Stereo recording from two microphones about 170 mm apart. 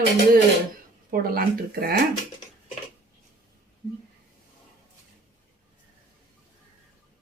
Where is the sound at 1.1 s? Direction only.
60° right (ahead or behind).